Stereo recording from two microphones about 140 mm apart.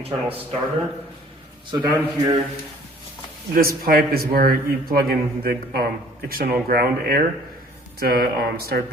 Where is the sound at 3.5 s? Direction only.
90° right.